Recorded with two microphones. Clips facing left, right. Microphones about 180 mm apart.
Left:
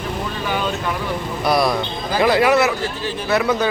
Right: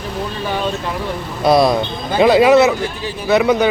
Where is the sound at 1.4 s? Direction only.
25° right (ahead or behind).